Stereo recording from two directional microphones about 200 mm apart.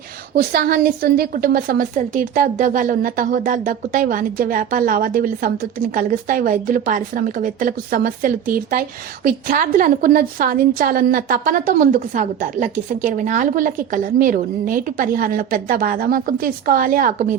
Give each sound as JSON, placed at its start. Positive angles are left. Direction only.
{"t": 0.3, "sound": "a woman's voice", "side_deg": -50}